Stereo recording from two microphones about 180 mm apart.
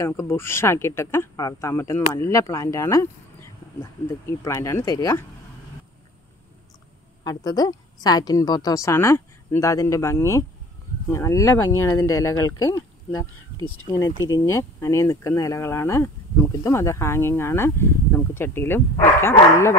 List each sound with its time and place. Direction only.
0.0 s speech: 15° left (ahead or behind)
7.2 s speech: 20° left (ahead or behind)